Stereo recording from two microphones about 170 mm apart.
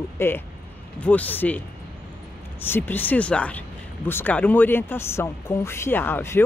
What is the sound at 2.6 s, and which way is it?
Speech, 10° left (ahead or behind).